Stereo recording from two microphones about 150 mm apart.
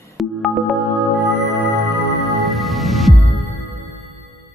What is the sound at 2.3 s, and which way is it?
Music, centre (ahead or behind).